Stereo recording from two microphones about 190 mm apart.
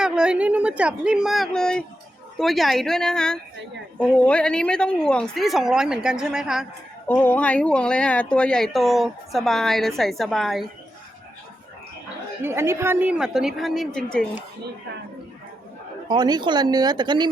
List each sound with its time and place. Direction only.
0.0 s speech: 5° right (ahead or behind)
7.1 s speech: 10° left (ahead or behind)
12.4 s speech: 15° right (ahead or behind); by 14.3 s 5° left (ahead or behind)
16.0 s speech: 20° right (ahead or behind)